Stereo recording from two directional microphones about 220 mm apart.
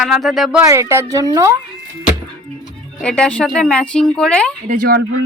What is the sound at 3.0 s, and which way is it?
Speech, 5° left (ahead or behind).